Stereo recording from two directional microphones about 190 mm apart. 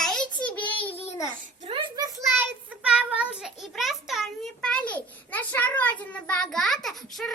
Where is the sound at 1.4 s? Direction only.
35° right (ahead or behind).